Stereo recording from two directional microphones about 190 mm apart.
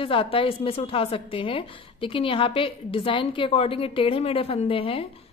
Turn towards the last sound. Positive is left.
turn(degrees=30)  # may be behind; listen again after turning